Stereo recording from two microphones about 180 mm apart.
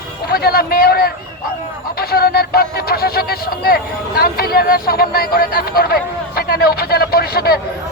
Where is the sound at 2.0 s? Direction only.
60° left (ahead or behind).